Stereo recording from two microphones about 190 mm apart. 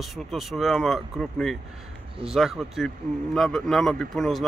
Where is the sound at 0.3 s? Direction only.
Centre (ahead or behind).